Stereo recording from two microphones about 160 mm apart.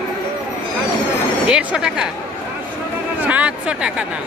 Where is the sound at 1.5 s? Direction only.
5° right (ahead or behind).